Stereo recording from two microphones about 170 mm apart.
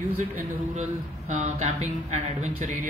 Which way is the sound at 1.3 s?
45° right (ahead or behind).